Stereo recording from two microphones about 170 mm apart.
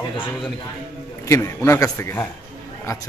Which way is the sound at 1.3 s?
15° left (ahead or behind).